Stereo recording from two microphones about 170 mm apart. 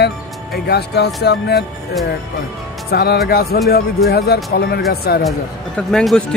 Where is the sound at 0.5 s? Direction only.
70° left (ahead or behind).